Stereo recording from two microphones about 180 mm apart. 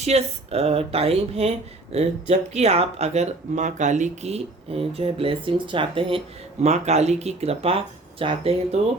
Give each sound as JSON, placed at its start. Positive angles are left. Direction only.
{"t": 0.0, "sound": "speech", "side_deg": -35}